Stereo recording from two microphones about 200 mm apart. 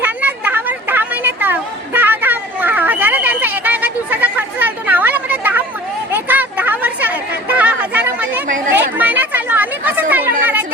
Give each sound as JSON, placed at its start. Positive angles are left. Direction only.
{"t": 0.0, "sound": "a sound", "side_deg": -10}
{"t": 6.1, "sound": "chatter", "side_deg": -10}
{"t": 8.4, "sound": "chatter", "side_deg": -40}
{"t": 8.7, "sound": "chatter", "side_deg": -10}